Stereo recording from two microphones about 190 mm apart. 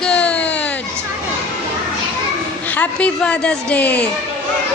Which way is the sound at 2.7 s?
5° left (ahead or behind).